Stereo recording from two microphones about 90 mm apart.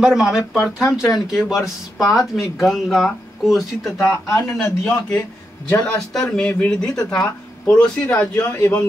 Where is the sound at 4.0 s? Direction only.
35° left (ahead or behind).